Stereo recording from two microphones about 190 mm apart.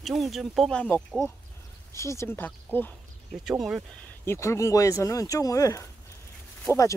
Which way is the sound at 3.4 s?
5° right (ahead or behind).